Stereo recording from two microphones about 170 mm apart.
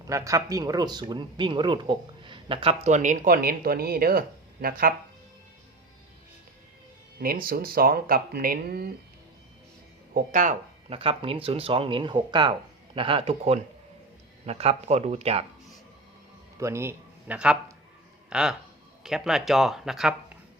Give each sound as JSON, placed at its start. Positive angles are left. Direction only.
{"t": 0.1, "sound": "speech", "side_deg": -20}
{"t": 7.2, "sound": "speech", "side_deg": -60}
{"t": 10.3, "sound": "speech", "side_deg": -50}
{"t": 10.9, "sound": "speech", "side_deg": -35}
{"t": 16.6, "sound": "speech", "side_deg": -15}